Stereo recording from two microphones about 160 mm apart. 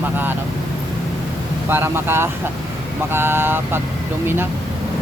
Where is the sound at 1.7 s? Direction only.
15° right (ahead or behind).